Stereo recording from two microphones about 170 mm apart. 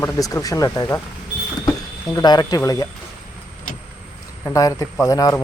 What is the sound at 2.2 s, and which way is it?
Speech, 25° left (ahead or behind).